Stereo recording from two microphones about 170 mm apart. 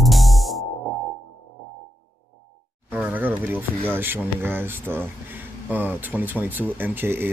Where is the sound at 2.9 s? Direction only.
10° right (ahead or behind).